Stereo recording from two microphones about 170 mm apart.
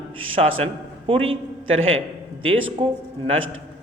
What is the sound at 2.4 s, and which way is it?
Speech, 30° right (ahead or behind).